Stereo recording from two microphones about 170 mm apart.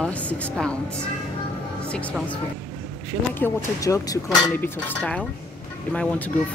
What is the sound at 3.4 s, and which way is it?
Speech, 20° left (ahead or behind).